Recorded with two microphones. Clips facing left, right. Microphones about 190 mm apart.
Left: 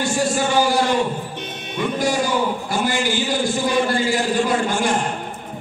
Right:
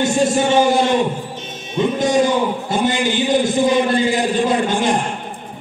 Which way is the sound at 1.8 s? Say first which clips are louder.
Right 5 dB; 20° right (ahead or behind).